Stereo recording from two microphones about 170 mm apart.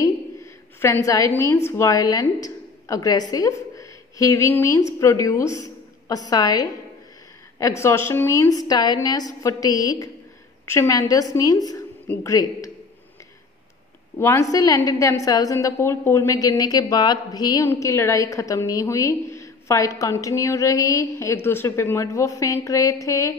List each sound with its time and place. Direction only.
0.7 s a woman's voice: 15° left (ahead or behind)
14.1 s a woman's voice: 15° left (ahead or behind)